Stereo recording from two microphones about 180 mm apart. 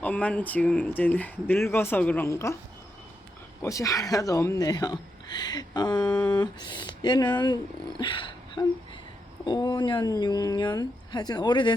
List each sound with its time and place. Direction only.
0.0 s speech: 5° left (ahead or behind)
3.6 s speech: 15° left (ahead or behind)
6.1 s speech: 5° left (ahead or behind)
6.3 s speech: 25° left (ahead or behind)